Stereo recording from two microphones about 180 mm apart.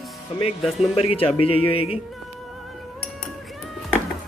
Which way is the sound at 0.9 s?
30° left (ahead or behind).